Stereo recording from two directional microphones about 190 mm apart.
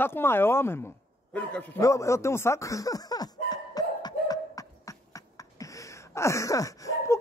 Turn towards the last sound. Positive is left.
turn(degrees=15)  # may be behind; listen again after turning